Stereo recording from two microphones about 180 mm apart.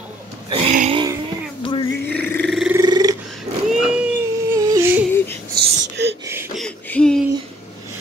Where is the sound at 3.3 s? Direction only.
5° right (ahead or behind).